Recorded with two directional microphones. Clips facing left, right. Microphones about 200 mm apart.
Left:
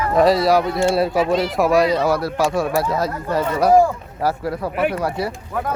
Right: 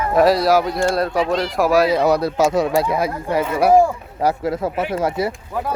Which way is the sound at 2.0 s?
20° right (ahead or behind).